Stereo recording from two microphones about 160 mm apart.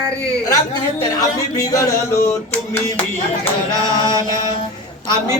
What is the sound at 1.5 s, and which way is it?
Music, 20° left (ahead or behind).